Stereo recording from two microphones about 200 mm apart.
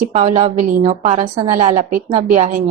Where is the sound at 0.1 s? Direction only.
35° right (ahead or behind).